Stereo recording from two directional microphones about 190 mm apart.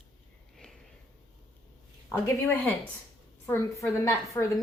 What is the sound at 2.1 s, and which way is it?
A woman's voice, 10° left (ahead or behind).